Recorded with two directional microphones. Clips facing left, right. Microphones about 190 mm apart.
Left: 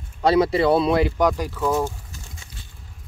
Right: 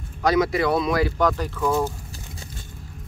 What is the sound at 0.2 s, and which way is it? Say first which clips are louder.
Speech: left 3 dB; 30° left (ahead or behind).